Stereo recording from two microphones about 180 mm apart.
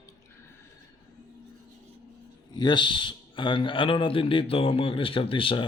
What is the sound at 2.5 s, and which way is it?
A man's voice, 25° left (ahead or behind).